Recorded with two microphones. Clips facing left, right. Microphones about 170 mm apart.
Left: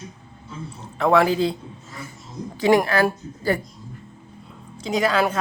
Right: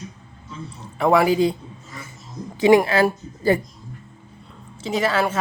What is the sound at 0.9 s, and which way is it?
Speech, 10° right (ahead or behind).